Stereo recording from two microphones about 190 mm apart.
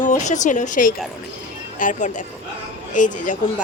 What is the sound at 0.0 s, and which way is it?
A woman's voice, 40° left (ahead or behind).